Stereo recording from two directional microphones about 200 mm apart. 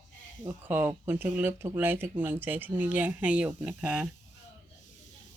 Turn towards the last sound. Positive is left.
turn(degrees=-5)  # may be behind; listen again after turning